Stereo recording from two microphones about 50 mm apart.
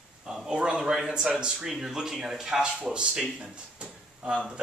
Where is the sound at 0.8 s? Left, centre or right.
Centre.